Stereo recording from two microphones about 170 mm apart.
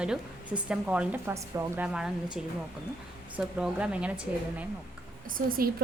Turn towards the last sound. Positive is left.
turn(degrees=-60)  # may be behind; listen again after turning